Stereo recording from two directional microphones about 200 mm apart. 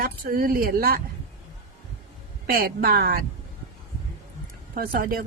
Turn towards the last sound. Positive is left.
turn(degrees=-45)  # may be behind; listen again after turning